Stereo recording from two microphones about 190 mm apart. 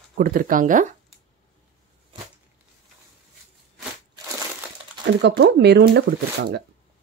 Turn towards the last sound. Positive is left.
turn(degrees=-60)  # may be behind; listen again after turning